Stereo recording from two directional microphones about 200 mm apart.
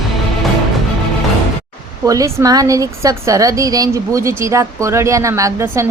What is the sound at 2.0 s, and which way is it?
A woman's voice, 15° right (ahead or behind).